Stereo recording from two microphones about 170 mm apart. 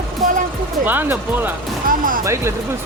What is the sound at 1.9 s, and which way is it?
Speech, 55° right (ahead or behind).